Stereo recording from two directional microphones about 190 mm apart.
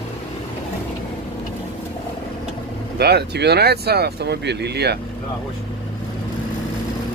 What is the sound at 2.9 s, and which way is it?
Speech, 60° right (ahead or behind).